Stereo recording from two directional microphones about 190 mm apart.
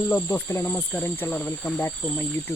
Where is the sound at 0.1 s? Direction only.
10° left (ahead or behind).